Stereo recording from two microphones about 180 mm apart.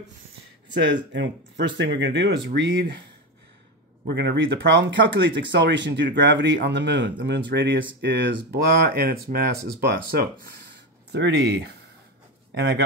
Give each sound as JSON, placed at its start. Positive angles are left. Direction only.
{"t": 0.7, "sound": "speech", "side_deg": -90}
{"t": 4.0, "sound": "speech", "side_deg": -65}
{"t": 8.5, "sound": "speech", "side_deg": -60}
{"t": 11.1, "sound": "speech", "side_deg": -75}